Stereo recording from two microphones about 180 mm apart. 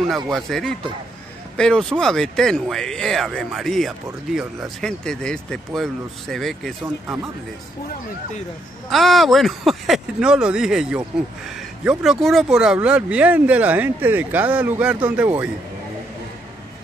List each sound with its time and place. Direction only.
0.1 s speech: centre (ahead or behind)
8.9 s speech: centre (ahead or behind)